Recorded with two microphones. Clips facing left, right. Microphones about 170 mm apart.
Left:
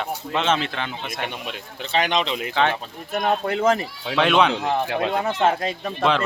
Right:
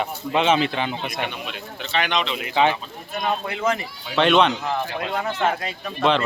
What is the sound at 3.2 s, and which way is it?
Speech, 45° left (ahead or behind).